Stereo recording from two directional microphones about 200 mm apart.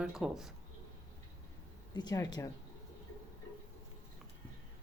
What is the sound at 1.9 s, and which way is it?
Speech, 20° left (ahead or behind).